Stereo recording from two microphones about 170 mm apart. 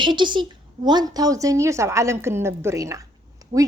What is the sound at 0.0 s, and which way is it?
A woman's voice, 25° right (ahead or behind).